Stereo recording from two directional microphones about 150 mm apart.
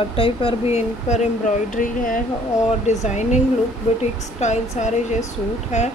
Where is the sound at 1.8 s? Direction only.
65° left (ahead or behind).